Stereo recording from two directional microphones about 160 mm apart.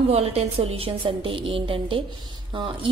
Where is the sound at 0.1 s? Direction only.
40° right (ahead or behind).